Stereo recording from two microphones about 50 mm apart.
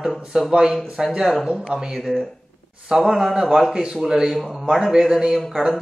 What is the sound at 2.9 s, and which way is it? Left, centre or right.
Speech, centre.